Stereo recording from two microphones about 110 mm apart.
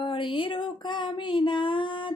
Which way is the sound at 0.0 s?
50° left (ahead or behind).